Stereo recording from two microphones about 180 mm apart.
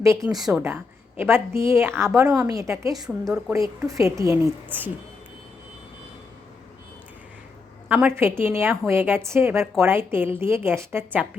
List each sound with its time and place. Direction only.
0.0 s a woman's voice: 15° right (ahead or behind)
0.3 s a woman's voice: centre (ahead or behind)
0.6 s a woman's voice: 15° right (ahead or behind)
7.9 s a woman's voice: 10° right (ahead or behind)